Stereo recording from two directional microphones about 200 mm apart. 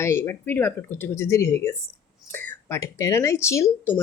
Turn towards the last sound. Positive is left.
turn(degrees=15)  # may be behind; listen again after turning